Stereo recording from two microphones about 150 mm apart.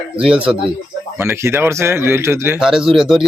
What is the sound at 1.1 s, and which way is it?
Speech, 15° right (ahead or behind).